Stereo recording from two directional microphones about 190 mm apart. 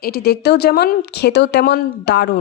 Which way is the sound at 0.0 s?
55° left (ahead or behind).